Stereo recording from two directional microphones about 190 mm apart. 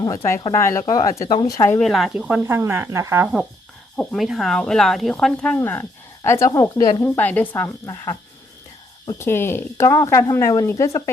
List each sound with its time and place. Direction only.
0.3 s speech: 15° left (ahead or behind)
1.8 s speech: centre (ahead or behind)
3.9 s speech: centre (ahead or behind); by 11.1 s 15° left (ahead or behind)